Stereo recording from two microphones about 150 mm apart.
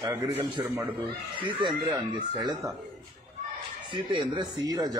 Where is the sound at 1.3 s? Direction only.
30° right (ahead or behind).